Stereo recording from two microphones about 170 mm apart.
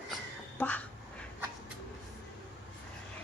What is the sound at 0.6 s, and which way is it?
Speech, 10° left (ahead or behind).